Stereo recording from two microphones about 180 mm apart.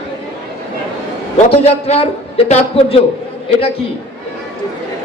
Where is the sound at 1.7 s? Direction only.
35° left (ahead or behind).